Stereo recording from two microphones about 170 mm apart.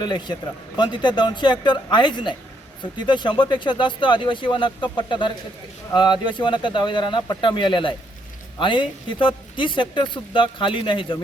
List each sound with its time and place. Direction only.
0.0 s speech: 25° left (ahead or behind)